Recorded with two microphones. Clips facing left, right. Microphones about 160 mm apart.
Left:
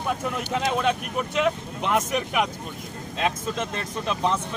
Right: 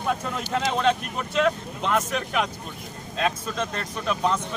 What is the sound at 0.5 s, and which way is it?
Speech, 10° left (ahead or behind).